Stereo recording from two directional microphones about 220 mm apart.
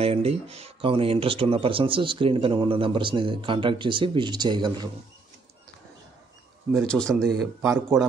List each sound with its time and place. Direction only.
0.0 s speech: 25° right (ahead or behind)
6.8 s speech: 5° left (ahead or behind)
7.6 s a man's voice: 10° right (ahead or behind)